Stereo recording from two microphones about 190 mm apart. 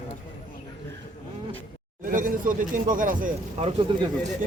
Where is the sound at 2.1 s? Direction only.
45° right (ahead or behind).